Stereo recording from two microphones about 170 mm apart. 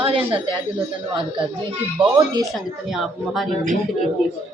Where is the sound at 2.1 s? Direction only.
25° right (ahead or behind).